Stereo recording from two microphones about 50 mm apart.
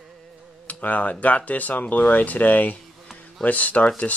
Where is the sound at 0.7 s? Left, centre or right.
Left.